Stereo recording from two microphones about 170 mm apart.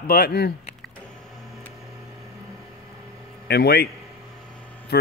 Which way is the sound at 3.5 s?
65° left (ahead or behind).